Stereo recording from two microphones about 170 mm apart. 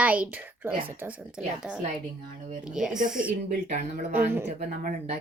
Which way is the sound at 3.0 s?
50° right (ahead or behind).